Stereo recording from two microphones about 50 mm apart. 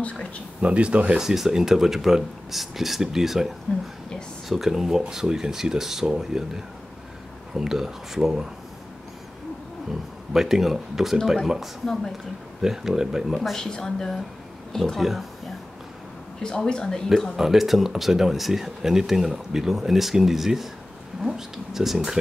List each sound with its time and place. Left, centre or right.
0.6 s speech: right
1.2 s speech: centre
10.3 s speech: centre
11.8 s speech: centre
12.6 s speech: centre
13.4 s speech: centre
15.0 s speech: centre
16.4 s speech: centre
17.4 s speech: centre